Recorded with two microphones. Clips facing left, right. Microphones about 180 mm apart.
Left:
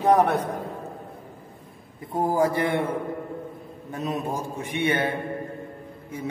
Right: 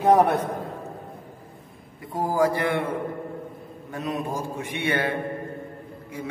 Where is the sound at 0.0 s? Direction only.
10° right (ahead or behind).